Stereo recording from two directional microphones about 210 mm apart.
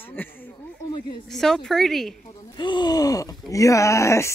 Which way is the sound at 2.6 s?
20° left (ahead or behind).